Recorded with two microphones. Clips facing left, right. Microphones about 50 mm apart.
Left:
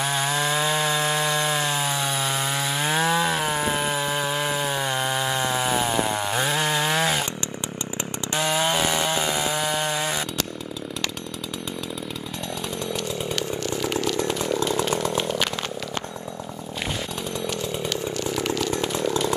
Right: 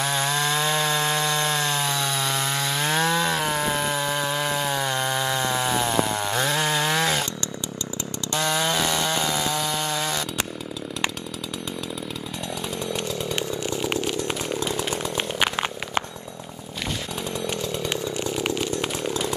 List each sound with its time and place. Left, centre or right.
0.0 s chainsaw: centre
8.3 s chainsaw: centre
18.4 s chainsaw: right